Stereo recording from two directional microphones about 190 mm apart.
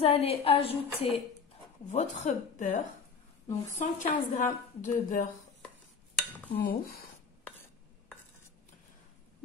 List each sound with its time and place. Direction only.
0.0 s a woman's voice: 30° left (ahead or behind)
6.6 s a woman's voice: 50° left (ahead or behind)